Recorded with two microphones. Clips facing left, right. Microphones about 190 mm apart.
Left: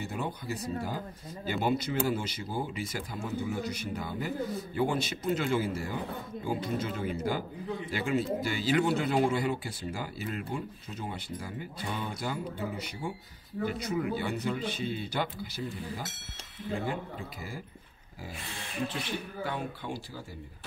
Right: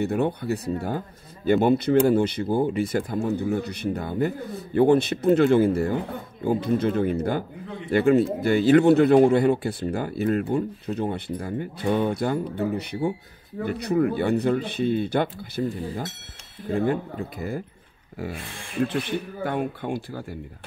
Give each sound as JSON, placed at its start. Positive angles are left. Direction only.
{"t": 0.0, "sound": "speech", "side_deg": -65}
{"t": 19.4, "sound": "speech", "side_deg": -55}